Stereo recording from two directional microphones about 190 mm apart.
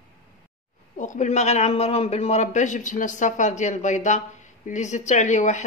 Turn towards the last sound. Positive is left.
turn(degrees=40)  # may be behind; listen again after turning